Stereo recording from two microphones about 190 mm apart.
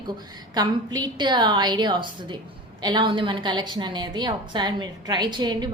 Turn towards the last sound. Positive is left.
turn(degrees=-25)  # may be behind; listen again after turning